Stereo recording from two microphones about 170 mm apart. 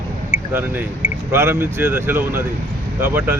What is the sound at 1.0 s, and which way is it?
Speech, 15° right (ahead or behind).